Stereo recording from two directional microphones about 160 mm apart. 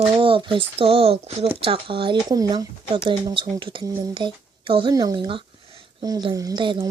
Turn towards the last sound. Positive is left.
turn(degrees=-30)  # may be behind; listen again after turning